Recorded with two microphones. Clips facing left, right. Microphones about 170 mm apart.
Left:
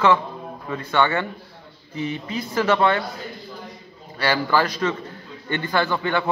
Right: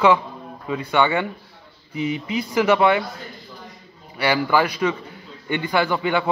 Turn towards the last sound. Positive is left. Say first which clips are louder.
# right 2 dB
turn(degrees=-15)  # may be behind; listen again after turning